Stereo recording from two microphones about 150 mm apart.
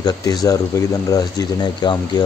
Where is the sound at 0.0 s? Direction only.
25° left (ahead or behind).